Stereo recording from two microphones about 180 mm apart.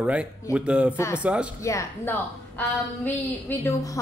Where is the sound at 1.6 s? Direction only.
15° left (ahead or behind).